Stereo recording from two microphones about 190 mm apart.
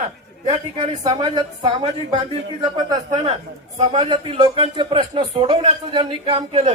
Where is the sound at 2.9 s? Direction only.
40° right (ahead or behind).